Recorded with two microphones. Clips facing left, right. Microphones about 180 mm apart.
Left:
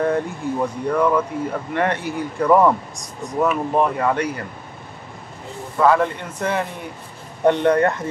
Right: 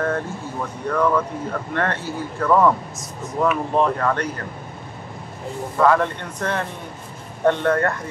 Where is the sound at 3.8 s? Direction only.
10° left (ahead or behind).